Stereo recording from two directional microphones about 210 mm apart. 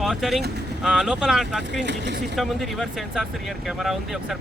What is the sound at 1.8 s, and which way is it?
Speech, 55° right (ahead or behind).